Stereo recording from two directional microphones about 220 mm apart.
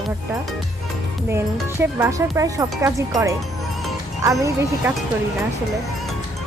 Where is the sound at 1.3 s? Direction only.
10° right (ahead or behind).